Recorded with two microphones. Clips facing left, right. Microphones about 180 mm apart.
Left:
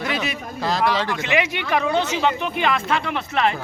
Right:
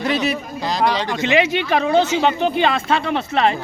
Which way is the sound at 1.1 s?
30° right (ahead or behind).